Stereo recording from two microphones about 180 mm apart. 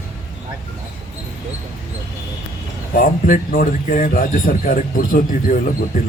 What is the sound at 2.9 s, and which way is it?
Speech, 50° left (ahead or behind).